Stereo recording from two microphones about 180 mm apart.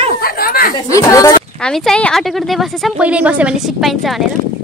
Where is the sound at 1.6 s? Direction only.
5° left (ahead or behind).